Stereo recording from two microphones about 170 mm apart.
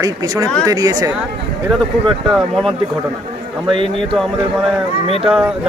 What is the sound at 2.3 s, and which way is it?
Speech, centre (ahead or behind).